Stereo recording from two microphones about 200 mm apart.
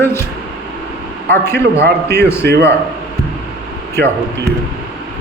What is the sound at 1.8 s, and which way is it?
Speech, 55° right (ahead or behind).